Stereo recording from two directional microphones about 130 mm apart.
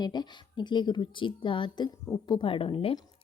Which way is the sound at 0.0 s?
35° left (ahead or behind).